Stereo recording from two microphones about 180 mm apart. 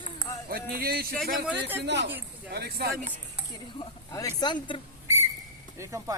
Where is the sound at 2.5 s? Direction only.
60° right (ahead or behind).